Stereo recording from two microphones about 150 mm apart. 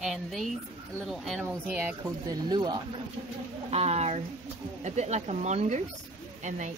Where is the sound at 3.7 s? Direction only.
45° right (ahead or behind).